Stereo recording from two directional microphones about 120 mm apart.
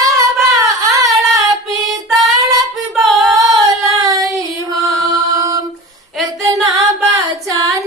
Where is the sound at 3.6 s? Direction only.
30° right (ahead or behind).